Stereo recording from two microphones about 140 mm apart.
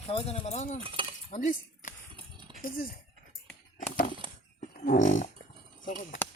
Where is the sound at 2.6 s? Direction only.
90° left.